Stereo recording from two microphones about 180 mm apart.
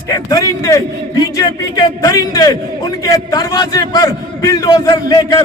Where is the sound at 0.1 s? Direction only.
20° left (ahead or behind).